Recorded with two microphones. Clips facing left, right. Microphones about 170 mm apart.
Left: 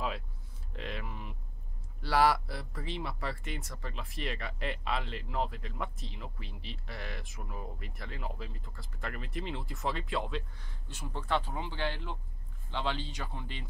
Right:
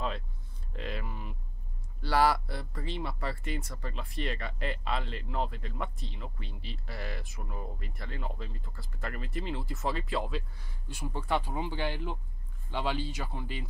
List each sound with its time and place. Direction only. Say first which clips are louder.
0.7 s speech: right 2 dB; centre (ahead or behind)